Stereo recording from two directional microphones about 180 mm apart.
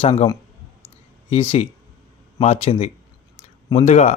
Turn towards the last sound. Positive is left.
turn(degrees=35)  # may be behind; listen again after turning